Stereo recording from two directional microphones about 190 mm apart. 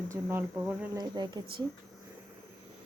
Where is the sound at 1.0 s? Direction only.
20° right (ahead or behind).